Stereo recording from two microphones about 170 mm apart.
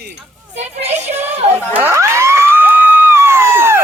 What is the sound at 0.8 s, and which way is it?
Child singing, 15° right (ahead or behind).